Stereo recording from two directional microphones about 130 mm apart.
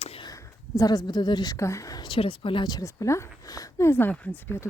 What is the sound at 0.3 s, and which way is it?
Speech, 25° left (ahead or behind).